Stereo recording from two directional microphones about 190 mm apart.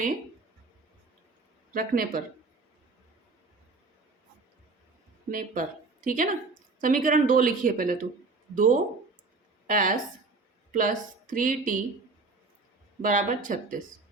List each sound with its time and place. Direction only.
1.7 s a woman's voice: 50° right (ahead or behind)
5.3 s a woman's voice: 45° right (ahead or behind)
13.0 s a woman's voice: 45° right (ahead or behind)